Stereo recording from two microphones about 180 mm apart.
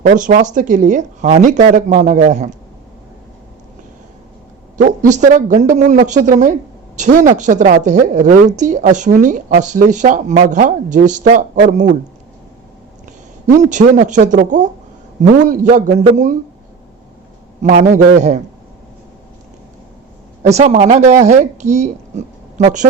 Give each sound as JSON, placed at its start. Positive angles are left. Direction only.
{"t": 0.2, "sound": "a woman's voice", "side_deg": -45}
{"t": 4.8, "sound": "a woman's voice", "side_deg": -40}
{"t": 13.6, "sound": "a woman's voice", "side_deg": -40}
{"t": 17.6, "sound": "a woman's voice", "side_deg": -45}
{"t": 20.5, "sound": "speech", "side_deg": -40}